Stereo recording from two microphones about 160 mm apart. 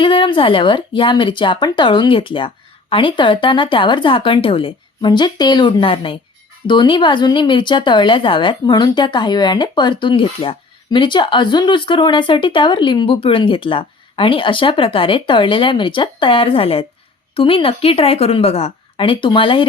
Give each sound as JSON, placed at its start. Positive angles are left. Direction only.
{"t": 0.0, "sound": "speech", "side_deg": 35}